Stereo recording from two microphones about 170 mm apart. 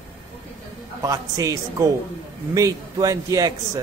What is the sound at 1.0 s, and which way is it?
Speech, 20° right (ahead or behind).